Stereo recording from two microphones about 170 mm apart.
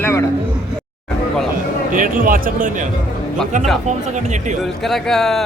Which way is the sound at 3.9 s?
45° right (ahead or behind).